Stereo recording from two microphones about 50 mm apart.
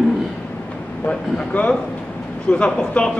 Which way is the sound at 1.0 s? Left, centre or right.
Left.